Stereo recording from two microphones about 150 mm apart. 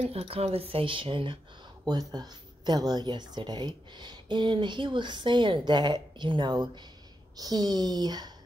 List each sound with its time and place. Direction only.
0.0 s speech: 40° right (ahead or behind); by 8.3 s 25° right (ahead or behind)